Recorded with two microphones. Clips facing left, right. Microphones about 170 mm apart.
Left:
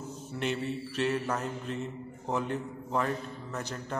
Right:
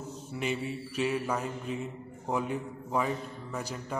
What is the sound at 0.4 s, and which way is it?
Mantra, 5° right (ahead or behind).